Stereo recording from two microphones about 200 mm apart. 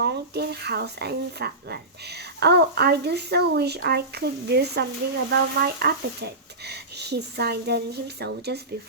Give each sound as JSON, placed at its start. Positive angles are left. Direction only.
{"t": 0.0, "sound": "speech", "side_deg": -55}